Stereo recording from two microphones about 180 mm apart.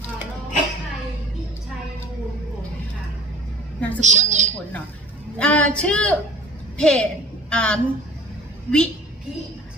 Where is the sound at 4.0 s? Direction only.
40° right (ahead or behind).